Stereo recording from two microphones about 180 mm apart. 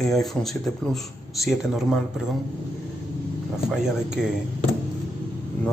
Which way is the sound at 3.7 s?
5° right (ahead or behind).